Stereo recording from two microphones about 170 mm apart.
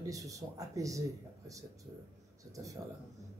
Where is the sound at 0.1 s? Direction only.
20° right (ahead or behind).